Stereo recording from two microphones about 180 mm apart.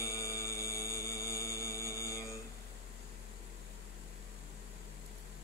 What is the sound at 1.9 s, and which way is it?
Mantra, 15° left (ahead or behind).